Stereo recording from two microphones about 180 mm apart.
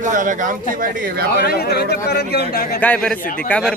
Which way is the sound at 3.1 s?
50° left (ahead or behind).